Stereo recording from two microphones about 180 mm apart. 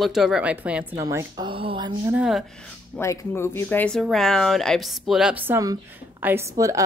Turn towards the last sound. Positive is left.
turn(degrees=-15)  # may be behind; listen again after turning